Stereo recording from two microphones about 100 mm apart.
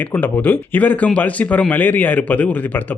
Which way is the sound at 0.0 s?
20° left (ahead or behind).